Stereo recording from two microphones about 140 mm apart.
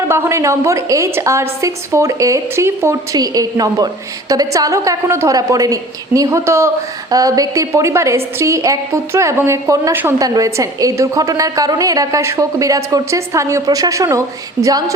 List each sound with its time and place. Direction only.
0.1 s a woman's voice: 20° right (ahead or behind)